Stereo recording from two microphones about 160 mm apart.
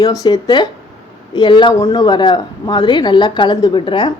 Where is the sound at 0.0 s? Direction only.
25° left (ahead or behind).